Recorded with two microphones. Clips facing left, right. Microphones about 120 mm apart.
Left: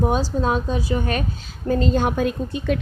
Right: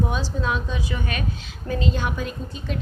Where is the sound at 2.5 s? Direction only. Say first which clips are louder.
Left 7 dB; 65° left (ahead or behind).